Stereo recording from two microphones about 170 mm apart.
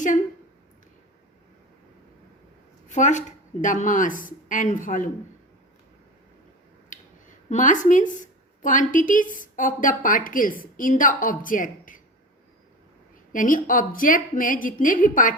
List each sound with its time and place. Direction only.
2.9 s a woman's voice: 45° left (ahead or behind)
6.9 s a sound: 50° left (ahead or behind)
7.5 s a woman's voice: 50° left (ahead or behind)
13.3 s a woman's voice: 50° left (ahead or behind)